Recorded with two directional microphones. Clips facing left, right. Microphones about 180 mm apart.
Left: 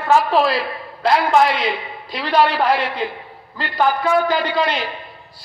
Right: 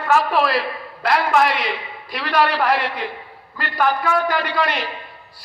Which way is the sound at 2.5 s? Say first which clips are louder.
Left 1 dB; 25° left (ahead or behind).